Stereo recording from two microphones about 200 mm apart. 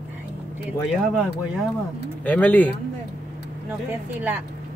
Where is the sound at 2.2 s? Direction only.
5° left (ahead or behind).